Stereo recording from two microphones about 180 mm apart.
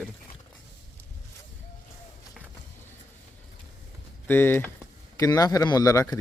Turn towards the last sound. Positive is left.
turn(degrees=20)  # may be behind; listen again after turning